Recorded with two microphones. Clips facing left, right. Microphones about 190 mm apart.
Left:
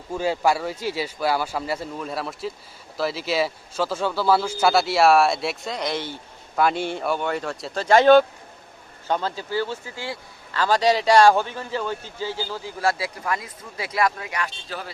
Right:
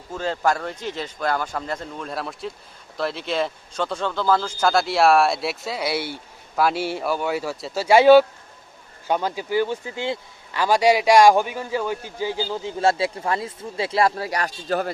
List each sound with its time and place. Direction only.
0.1 s speech: 10° left (ahead or behind); by 14.5 s 35° right (ahead or behind)